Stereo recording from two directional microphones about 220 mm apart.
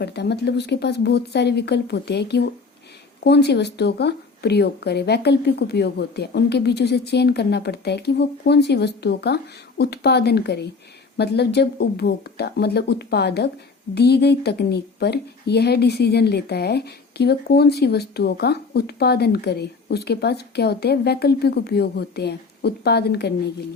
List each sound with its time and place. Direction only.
0.0 s a woman's voice: 50° left (ahead or behind)